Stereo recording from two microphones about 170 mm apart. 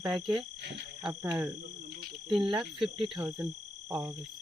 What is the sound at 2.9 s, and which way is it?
Speech, 30° right (ahead or behind).